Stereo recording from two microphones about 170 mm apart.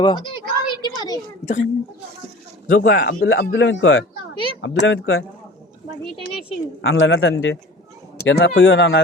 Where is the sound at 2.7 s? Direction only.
75° left (ahead or behind).